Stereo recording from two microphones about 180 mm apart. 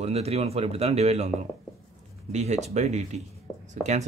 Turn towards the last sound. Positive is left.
turn(degrees=-40)  # may be behind; listen again after turning